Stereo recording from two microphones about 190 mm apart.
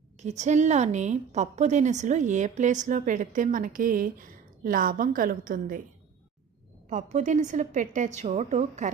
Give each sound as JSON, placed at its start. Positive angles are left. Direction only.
{"t": 0.2, "sound": "a woman's voice", "side_deg": -35}
{"t": 6.9, "sound": "a woman's voice", "side_deg": -40}